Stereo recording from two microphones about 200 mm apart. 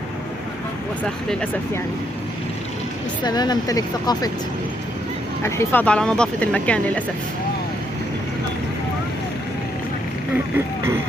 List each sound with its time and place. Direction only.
1.3 s speech: 5° left (ahead or behind)
3.2 s speech: 20° left (ahead or behind)
5.4 s speech: 15° left (ahead or behind)